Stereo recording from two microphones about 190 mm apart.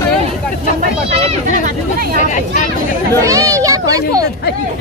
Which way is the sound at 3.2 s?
15° right (ahead or behind).